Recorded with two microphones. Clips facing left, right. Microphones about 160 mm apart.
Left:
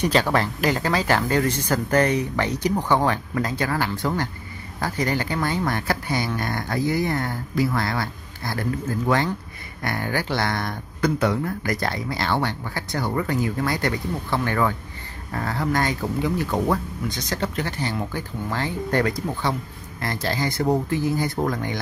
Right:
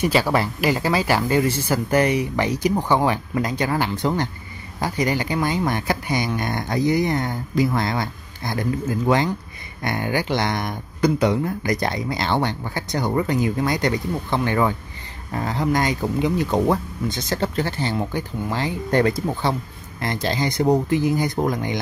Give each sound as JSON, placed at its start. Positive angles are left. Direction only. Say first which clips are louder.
{"t": 0.0, "sound": "speech", "louder": "right 1 dB", "side_deg": -5}